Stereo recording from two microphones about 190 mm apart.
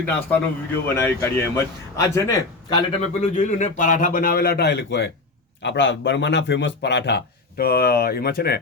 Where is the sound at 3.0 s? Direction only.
35° left (ahead or behind).